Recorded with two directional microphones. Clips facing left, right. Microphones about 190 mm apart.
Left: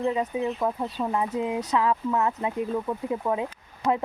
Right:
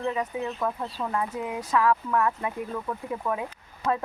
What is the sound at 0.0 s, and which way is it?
Speech, 20° left (ahead or behind).